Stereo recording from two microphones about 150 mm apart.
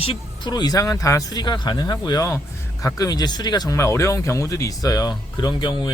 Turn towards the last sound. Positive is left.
turn(degrees=35)  # may be behind; listen again after turning